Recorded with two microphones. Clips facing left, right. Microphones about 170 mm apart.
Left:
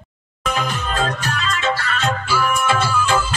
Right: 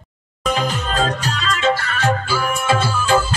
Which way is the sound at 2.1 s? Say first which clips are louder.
Left 1 dB; 20° right (ahead or behind).